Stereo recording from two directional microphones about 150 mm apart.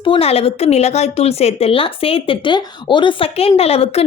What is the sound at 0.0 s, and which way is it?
A woman's voice, 35° left (ahead or behind).